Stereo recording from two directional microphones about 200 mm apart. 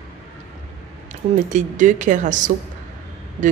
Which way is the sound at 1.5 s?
40° right (ahead or behind).